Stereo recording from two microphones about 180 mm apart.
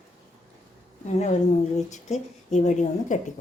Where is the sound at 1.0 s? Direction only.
40° left (ahead or behind).